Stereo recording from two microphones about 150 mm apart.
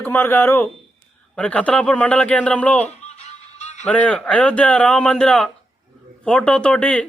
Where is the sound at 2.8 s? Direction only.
45° left (ahead or behind).